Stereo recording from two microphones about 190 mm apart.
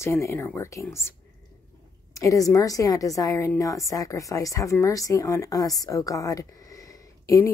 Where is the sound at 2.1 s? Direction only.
15° left (ahead or behind).